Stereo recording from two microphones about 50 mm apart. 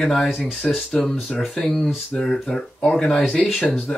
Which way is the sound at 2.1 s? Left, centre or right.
Centre.